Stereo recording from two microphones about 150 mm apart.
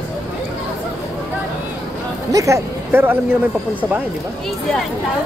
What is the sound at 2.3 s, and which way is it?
Speech, 20° right (ahead or behind).